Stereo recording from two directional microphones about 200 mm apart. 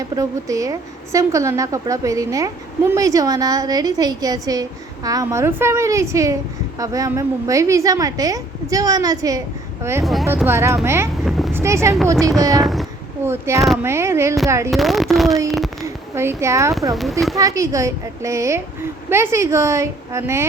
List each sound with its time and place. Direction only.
0.0 s a woman's voice: 15° right (ahead or behind)
10.0 s speech: centre (ahead or behind)
10.2 s a woman's voice: 10° right (ahead or behind)
11.3 s speech: centre (ahead or behind)
11.5 s speech: 15° right (ahead or behind)
12.5 s speech: centre (ahead or behind)
13.2 s a woman's voice: 10° right (ahead or behind)
14.7 s speech: centre (ahead or behind)
15.4 s a sound: centre (ahead or behind)
15.8 s a sound: 15° right (ahead or behind)
16.9 s speech: centre (ahead or behind)
17.3 s a woman's voice: 15° right (ahead or behind)